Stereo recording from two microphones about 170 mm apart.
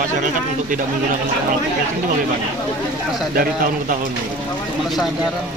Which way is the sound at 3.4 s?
55° right (ahead or behind).